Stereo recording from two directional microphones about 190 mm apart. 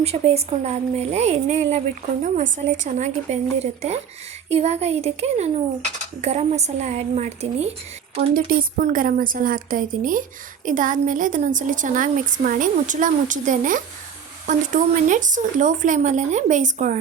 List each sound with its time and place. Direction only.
0.0 s speech: 35° right (ahead or behind)
8.3 s a woman's voice: 45° right (ahead or behind)
15.0 s speech: 40° right (ahead or behind)